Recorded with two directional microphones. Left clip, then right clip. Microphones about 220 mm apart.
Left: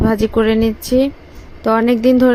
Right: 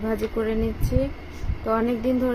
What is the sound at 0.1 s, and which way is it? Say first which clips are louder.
Speech: left 8 dB; 40° left (ahead or behind).